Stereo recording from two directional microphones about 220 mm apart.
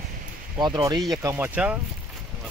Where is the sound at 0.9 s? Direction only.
Centre (ahead or behind).